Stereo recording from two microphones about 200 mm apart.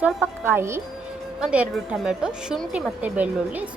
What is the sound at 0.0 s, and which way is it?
Speech, 10° right (ahead or behind).